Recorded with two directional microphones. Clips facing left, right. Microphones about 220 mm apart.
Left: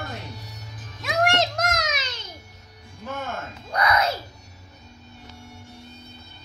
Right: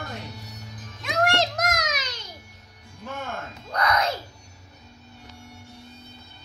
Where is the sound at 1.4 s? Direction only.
25° left (ahead or behind).